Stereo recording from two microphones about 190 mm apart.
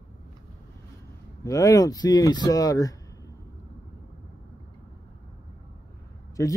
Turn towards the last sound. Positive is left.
turn(degrees=15)  # may be behind; listen again after turning